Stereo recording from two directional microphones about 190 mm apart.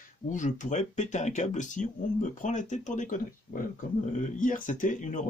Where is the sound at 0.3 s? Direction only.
40° left (ahead or behind).